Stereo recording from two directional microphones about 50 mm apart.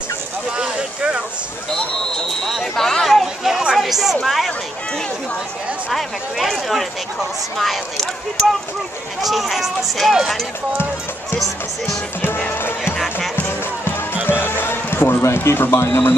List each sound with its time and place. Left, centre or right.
0.6 s a sound: right
2.4 s a sound: centre
3.7 s a woman's voice: centre
5.9 s speech: centre
12.5 s speech: left
13.4 s music: left
14.2 s basketball bounce: left